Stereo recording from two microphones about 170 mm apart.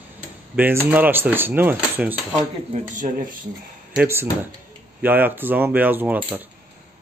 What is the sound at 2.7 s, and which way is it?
Speech, 50° right (ahead or behind).